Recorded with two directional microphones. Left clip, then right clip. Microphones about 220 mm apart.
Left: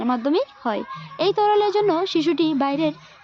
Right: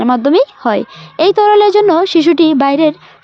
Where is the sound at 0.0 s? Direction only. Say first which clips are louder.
Right 11 dB; 40° right (ahead or behind).